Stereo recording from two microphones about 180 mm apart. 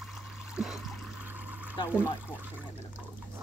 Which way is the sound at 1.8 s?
15° left (ahead or behind).